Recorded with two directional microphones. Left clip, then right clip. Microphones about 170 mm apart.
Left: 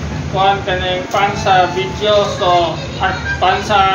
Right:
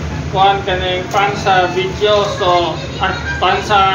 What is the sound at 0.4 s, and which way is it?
Speech, 20° left (ahead or behind).